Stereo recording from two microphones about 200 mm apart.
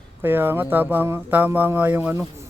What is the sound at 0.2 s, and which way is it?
Speech, 10° right (ahead or behind).